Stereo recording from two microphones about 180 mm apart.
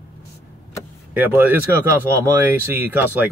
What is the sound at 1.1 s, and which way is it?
Speech, 10° right (ahead or behind).